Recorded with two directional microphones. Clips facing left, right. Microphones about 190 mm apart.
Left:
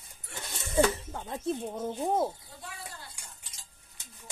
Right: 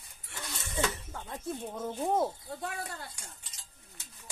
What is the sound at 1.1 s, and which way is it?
Speech, 25° left (ahead or behind).